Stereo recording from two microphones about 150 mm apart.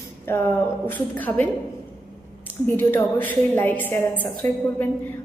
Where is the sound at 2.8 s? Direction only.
15° left (ahead or behind).